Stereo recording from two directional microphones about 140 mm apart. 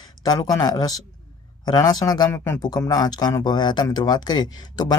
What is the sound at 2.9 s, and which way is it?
Speech, 30° left (ahead or behind).